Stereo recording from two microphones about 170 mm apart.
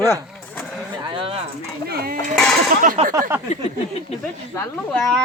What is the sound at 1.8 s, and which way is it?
Goat, 65° right (ahead or behind).